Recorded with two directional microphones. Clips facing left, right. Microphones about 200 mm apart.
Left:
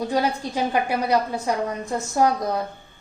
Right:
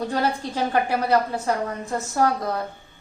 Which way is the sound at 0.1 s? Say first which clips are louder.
Left 1 dB; 15° left (ahead or behind).